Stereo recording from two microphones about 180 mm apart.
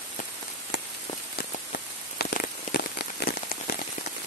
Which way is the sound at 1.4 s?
55° left (ahead or behind).